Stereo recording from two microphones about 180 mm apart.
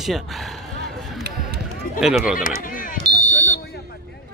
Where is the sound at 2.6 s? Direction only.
50° left (ahead or behind).